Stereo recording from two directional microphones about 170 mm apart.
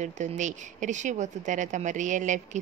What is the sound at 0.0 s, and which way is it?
Speech, 45° right (ahead or behind).